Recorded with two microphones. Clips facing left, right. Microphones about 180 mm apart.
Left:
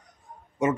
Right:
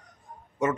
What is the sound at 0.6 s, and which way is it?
Speech, 10° left (ahead or behind).